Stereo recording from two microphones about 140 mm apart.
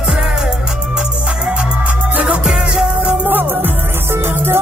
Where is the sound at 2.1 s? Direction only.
5° right (ahead or behind).